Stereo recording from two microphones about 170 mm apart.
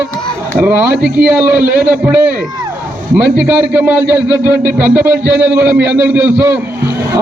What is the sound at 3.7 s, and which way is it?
A man's voice, 10° right (ahead or behind).